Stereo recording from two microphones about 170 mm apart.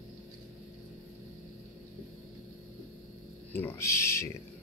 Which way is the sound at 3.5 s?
15° left (ahead or behind).